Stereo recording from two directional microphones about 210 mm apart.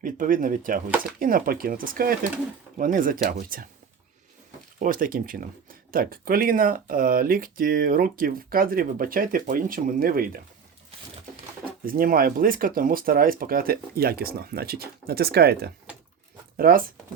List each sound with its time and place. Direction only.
0.0 s speech: 40° right (ahead or behind)
4.8 s speech: 40° right (ahead or behind)
11.9 s speech: 45° right (ahead or behind)